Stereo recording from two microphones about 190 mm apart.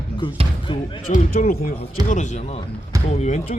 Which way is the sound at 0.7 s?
25° left (ahead or behind).